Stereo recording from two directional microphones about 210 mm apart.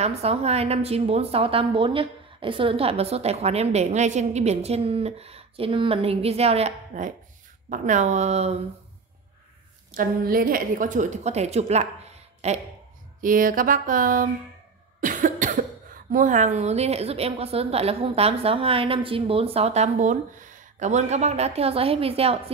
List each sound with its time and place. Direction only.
0.0 s a woman's voice: 30° right (ahead or behind)
9.9 s a woman's voice: 45° right (ahead or behind)
15.0 s cough: 40° right (ahead or behind)
16.1 s a woman's voice: 35° right (ahead or behind)